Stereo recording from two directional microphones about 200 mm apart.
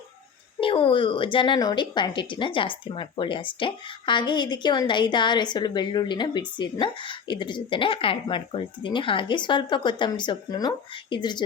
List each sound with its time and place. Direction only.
0.6 s a woman's voice: 25° left (ahead or behind)